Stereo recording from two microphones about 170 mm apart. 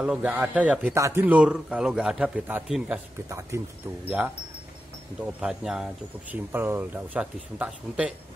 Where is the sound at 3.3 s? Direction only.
15° right (ahead or behind).